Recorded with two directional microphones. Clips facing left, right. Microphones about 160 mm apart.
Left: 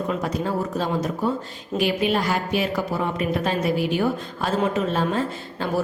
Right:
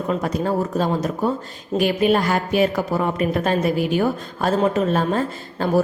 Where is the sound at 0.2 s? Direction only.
45° right (ahead or behind).